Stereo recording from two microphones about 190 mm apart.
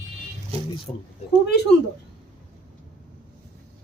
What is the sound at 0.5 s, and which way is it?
Speech, 30° right (ahead or behind).